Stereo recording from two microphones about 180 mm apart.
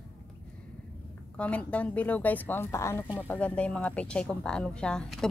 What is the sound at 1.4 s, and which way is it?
Speech, 5° left (ahead or behind).